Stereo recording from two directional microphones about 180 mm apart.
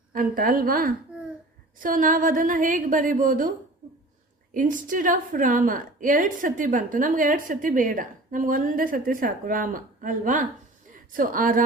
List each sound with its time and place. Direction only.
0.1 s a woman's voice: 50° right (ahead or behind)
4.5 s a woman's voice: 50° right (ahead or behind)